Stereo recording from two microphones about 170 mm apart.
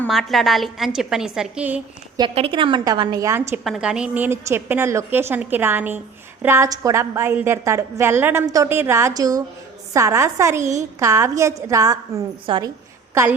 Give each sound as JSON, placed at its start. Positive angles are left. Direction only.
{"t": 0.1, "sound": "a woman's voice", "side_deg": 0}
{"t": 2.1, "sound": "a woman's voice", "side_deg": -30}
{"t": 3.6, "sound": "a woman's voice", "side_deg": -5}